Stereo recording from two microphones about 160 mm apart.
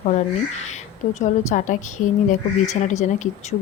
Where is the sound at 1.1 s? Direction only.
50° left (ahead or behind).